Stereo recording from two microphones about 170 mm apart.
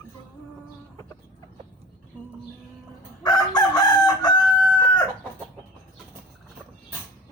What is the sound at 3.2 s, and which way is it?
Chicken, 25° left (ahead or behind).